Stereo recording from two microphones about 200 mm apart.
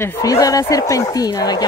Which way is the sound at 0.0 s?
15° left (ahead or behind).